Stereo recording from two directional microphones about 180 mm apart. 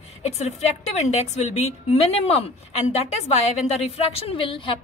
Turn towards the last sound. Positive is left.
turn(degrees=30)  # may be behind; listen again after turning